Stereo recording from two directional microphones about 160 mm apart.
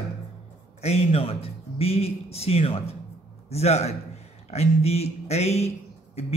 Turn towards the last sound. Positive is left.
turn(degrees=40)  # may be behind; listen again after turning